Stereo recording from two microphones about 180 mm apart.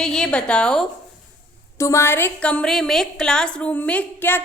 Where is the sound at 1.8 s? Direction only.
15° left (ahead or behind).